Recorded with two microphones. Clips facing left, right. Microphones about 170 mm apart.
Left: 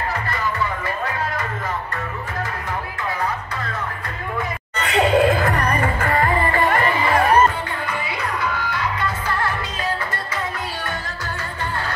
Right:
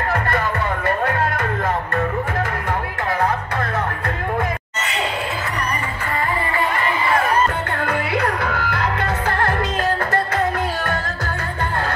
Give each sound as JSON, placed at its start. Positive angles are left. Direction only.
{"t": 0.8, "sound": "music", "side_deg": -60}
{"t": 4.8, "sound": "music", "side_deg": 50}
{"t": 7.8, "sound": "music", "side_deg": -60}